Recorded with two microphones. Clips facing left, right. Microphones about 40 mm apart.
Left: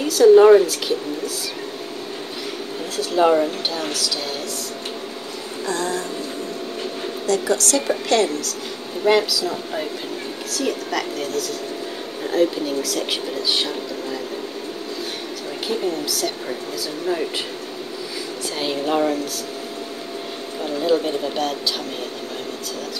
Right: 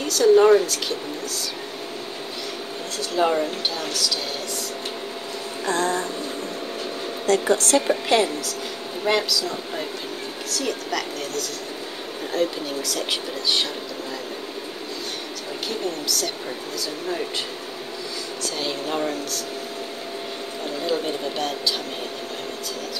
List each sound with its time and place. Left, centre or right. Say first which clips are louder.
0.0 s speech: left 5 dB; centre
3.0 s speech: left 5 dB; centre
5.7 s speech: right 1 dB; right
7.2 s speech: right 1 dB; right
8.1 s a woman's voice: left 2 dB; centre
9.0 s speech: left 5 dB; centre
18.6 s speech: left 6 dB; centre
20.8 s speech: left 5 dB; centre